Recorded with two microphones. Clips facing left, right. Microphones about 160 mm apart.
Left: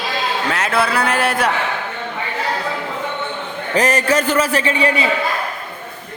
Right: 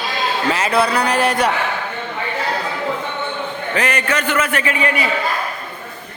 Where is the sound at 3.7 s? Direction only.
40° left (ahead or behind).